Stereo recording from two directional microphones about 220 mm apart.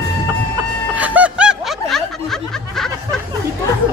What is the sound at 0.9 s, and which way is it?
Snicker, 5° right (ahead or behind).